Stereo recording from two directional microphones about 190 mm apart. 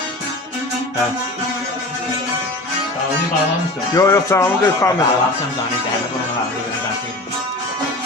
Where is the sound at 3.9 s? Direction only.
15° left (ahead or behind).